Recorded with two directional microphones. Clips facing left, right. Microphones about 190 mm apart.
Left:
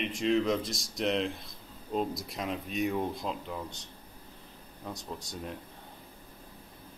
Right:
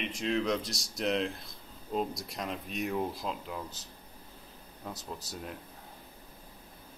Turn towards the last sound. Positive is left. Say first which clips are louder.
# left 2 dB
turn(degrees=-5)  # may be behind; listen again after turning